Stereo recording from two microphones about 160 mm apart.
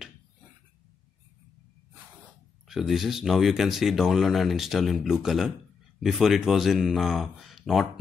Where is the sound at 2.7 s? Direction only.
Centre (ahead or behind).